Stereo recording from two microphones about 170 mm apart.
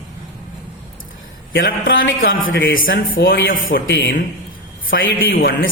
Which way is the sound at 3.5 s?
55° left (ahead or behind).